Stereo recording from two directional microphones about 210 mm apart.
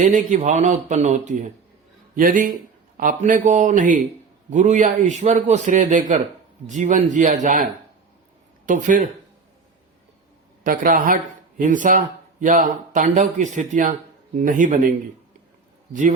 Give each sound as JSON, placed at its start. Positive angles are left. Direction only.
{"t": 0.0, "sound": "a man's voice", "side_deg": -35}
{"t": 10.6, "sound": "a man's voice", "side_deg": -40}